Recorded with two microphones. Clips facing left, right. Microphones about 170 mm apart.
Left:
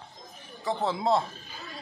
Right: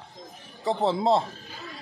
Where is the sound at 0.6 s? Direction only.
30° right (ahead or behind).